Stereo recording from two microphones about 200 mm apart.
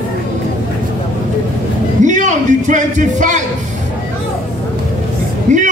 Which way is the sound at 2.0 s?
40° right (ahead or behind).